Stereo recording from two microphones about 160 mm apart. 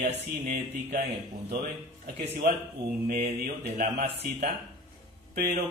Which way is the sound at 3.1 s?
75° right (ahead or behind).